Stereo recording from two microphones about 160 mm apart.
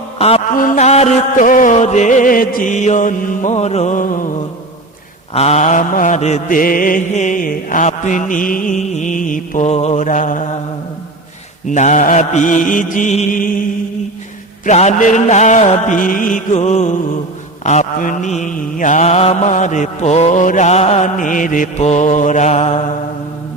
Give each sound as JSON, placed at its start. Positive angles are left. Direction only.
{"t": 0.2, "sound": "a sound", "side_deg": 40}
{"t": 0.6, "sound": "mantra", "side_deg": 45}
{"t": 5.3, "sound": "mantra", "side_deg": 40}
{"t": 11.7, "sound": "mantra", "side_deg": 50}
{"t": 14.6, "sound": "mantra", "side_deg": 45}